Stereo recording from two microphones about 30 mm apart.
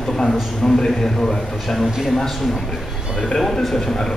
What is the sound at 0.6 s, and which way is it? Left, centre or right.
Speech, centre.